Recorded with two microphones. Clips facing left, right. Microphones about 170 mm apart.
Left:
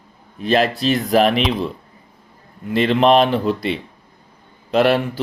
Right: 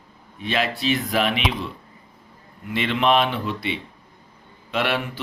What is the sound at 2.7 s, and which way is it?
Speech, 35° left (ahead or behind).